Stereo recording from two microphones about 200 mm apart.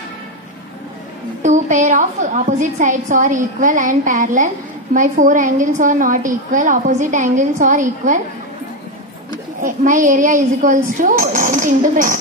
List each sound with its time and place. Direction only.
1.4 s a woman's voice: 40° right (ahead or behind)
9.6 s a woman's voice: 40° right (ahead or behind)